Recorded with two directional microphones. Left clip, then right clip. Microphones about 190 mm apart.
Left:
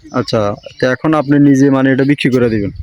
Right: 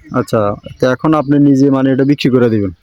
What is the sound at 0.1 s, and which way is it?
Speech, 5° right (ahead or behind).